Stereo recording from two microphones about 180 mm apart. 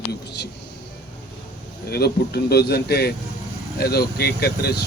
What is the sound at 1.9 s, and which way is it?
A man's voice, 65° left (ahead or behind).